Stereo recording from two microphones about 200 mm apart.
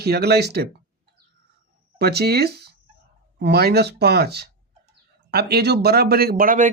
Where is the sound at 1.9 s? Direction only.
55° right (ahead or behind).